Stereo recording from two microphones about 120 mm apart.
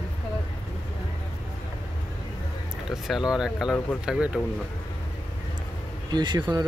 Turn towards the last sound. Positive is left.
turn(degrees=-35)  # may be behind; listen again after turning